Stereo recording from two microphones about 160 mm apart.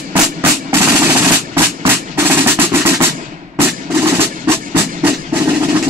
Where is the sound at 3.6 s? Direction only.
15° right (ahead or behind).